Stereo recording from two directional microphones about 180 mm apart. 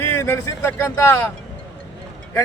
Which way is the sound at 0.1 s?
15° left (ahead or behind).